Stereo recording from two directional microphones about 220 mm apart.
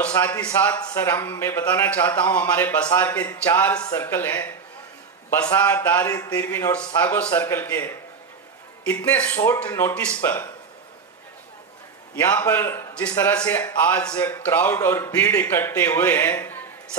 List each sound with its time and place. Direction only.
0.1 s a man's voice: 10° left (ahead or behind)
12.2 s a man's voice: 10° left (ahead or behind)